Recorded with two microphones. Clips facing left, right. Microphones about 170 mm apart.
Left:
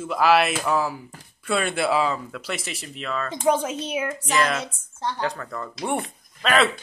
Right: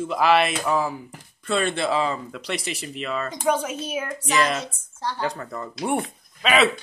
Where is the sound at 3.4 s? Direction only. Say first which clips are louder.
Left 2 dB; 30° left (ahead or behind).